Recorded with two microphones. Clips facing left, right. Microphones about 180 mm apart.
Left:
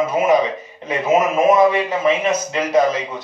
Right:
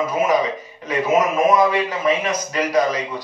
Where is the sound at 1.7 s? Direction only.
25° left (ahead or behind).